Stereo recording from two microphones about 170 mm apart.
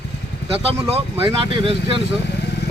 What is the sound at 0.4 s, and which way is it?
Speech, 35° right (ahead or behind).